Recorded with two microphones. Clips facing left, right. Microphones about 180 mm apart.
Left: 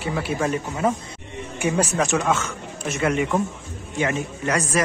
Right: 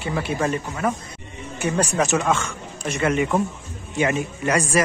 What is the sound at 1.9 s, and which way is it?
A man's voice, 5° right (ahead or behind).